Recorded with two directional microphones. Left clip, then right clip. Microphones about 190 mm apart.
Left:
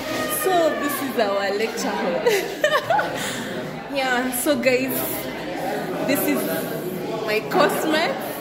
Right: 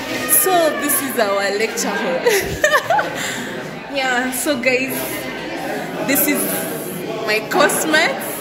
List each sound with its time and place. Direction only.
0.5 s music: 5° right (ahead or behind)
1.1 s a woman's voice: 5° right (ahead or behind)
7.2 s a woman's voice: centre (ahead or behind)